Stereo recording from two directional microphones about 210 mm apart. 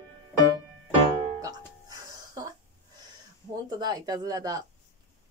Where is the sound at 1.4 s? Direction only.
15° right (ahead or behind).